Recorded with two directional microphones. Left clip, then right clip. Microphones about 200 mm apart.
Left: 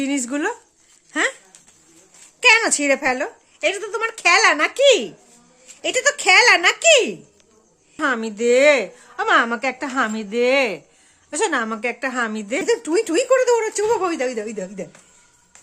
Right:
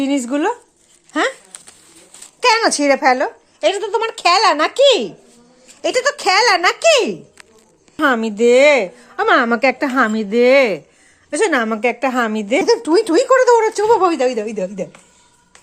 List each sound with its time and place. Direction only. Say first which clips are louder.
0.0 s a woman's voice: right 5 dB; 10° left (ahead or behind)
2.4 s a woman's voice: right 1 dB; 10° left (ahead or behind)
7.9 s a woman's voice: right 6 dB; 10° right (ahead or behind); by 14.8 s 10° left (ahead or behind)